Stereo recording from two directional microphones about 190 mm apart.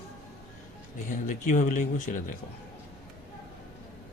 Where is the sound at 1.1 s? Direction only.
40° left (ahead or behind).